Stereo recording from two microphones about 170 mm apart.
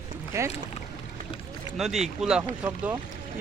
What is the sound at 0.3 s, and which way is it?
Speech, 15° right (ahead or behind).